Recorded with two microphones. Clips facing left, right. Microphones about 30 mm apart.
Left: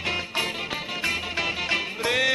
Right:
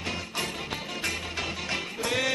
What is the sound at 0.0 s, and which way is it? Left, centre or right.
Music, left.